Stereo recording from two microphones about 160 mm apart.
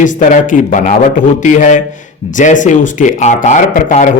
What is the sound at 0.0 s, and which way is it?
A man's voice, 55° left (ahead or behind).